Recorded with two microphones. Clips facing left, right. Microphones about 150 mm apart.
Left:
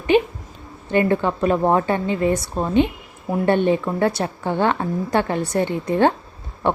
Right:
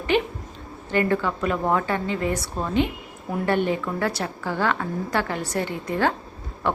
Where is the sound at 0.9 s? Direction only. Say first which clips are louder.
Left 4 dB; 20° left (ahead or behind).